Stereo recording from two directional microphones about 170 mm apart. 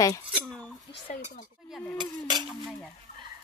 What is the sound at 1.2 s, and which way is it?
Speech, 50° left (ahead or behind).